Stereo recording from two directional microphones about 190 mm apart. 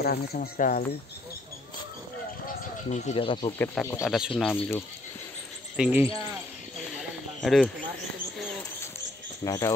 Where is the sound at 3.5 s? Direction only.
10° left (ahead or behind).